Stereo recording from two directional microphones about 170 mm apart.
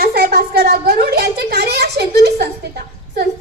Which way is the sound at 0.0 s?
65° right (ahead or behind).